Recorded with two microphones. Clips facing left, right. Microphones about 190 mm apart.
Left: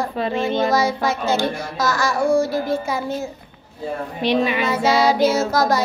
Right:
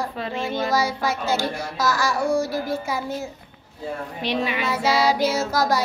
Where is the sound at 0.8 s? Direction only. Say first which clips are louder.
Left 4 dB; 10° right (ahead or behind).